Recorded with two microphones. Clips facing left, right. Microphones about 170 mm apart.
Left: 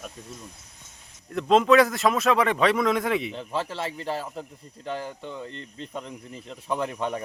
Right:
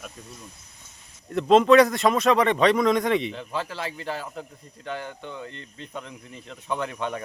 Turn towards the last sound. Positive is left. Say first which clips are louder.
# left 1 dB
turn(degrees=5)  # may be behind; listen again after turning